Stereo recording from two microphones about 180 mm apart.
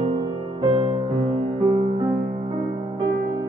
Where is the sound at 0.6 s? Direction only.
30° right (ahead or behind).